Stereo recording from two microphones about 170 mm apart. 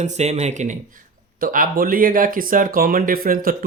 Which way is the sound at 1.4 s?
55° right (ahead or behind).